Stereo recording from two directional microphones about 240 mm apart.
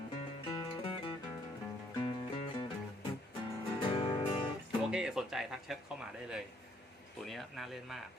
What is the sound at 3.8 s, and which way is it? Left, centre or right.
Music, left.